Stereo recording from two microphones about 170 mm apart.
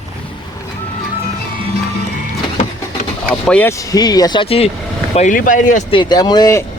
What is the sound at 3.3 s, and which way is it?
Speech, 5° left (ahead or behind).